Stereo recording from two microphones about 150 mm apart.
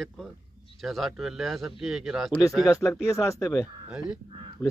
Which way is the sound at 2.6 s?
20° left (ahead or behind).